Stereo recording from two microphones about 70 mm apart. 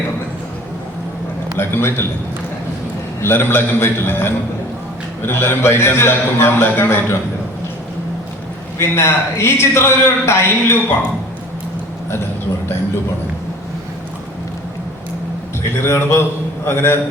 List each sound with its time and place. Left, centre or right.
1.5 s a man's voice: left
3.2 s a man's voice: left
8.8 s a man's voice: left
15.8 s a man's voice: left